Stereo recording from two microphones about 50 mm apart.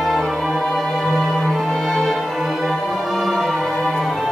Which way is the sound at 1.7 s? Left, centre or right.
Centre.